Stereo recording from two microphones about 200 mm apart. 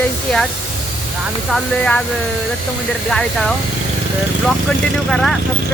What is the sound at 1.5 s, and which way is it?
Speech, 5° left (ahead or behind).